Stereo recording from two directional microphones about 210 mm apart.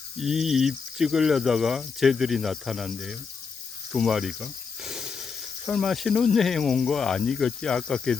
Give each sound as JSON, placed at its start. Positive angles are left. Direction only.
{"t": 0.2, "sound": "speech", "side_deg": 0}